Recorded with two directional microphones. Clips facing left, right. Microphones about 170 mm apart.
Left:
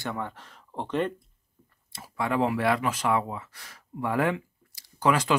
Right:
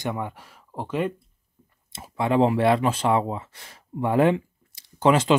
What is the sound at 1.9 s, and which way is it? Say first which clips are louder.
Speech: right 5 dB; 20° right (ahead or behind).